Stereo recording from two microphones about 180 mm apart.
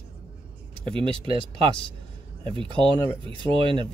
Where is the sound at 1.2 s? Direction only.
30° right (ahead or behind).